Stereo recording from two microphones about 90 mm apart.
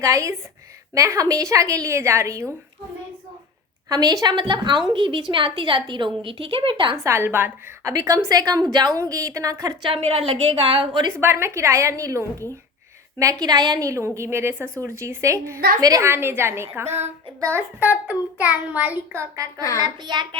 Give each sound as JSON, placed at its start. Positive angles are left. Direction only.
{"t": 0.0, "sound": "a woman's voice", "side_deg": -35}
{"t": 3.8, "sound": "a woman's voice", "side_deg": -45}
{"t": 6.2, "sound": "a woman's voice", "side_deg": -75}
{"t": 6.9, "sound": "a woman's voice", "side_deg": -30}
{"t": 7.9, "sound": "a woman's voice", "side_deg": -35}
{"t": 9.9, "sound": "a woman's voice", "side_deg": -90}
{"t": 11.1, "sound": "a woman's voice", "side_deg": -25}
{"t": 13.4, "sound": "a woman's voice", "side_deg": -50}
{"t": 15.8, "sound": "a woman's voice", "side_deg": -40}
{"t": 16.0, "sound": "a woman's voice", "side_deg": -25}
{"t": 19.1, "sound": "a woman's voice", "side_deg": -30}
{"t": 19.8, "sound": "a woman's voice", "side_deg": -55}